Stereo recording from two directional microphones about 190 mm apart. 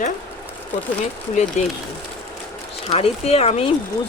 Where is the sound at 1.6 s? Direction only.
35° left (ahead or behind).